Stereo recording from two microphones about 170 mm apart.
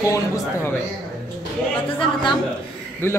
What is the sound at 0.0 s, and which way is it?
Speech, 15° left (ahead or behind).